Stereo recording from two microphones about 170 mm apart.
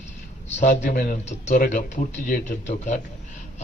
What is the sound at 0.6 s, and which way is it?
Speech, 45° left (ahead or behind).